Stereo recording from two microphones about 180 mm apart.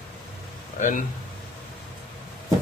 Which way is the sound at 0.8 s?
45° left (ahead or behind).